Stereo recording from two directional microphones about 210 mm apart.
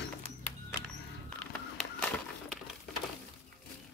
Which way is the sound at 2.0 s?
Centre (ahead or behind).